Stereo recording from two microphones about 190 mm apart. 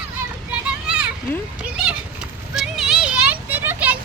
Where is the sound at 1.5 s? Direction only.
5° right (ahead or behind).